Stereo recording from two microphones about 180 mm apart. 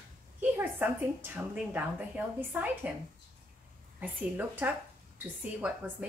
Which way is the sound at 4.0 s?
10° right (ahead or behind).